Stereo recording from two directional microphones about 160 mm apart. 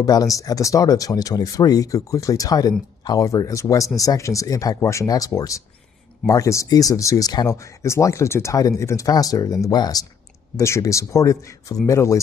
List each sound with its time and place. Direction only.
0.0 s speech: 25° left (ahead or behind)